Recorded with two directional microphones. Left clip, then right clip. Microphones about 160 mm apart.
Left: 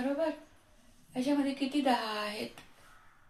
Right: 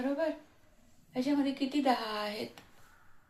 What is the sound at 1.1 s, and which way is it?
Speech, 15° right (ahead or behind).